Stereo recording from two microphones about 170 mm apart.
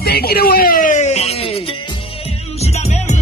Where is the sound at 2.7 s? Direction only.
40° left (ahead or behind).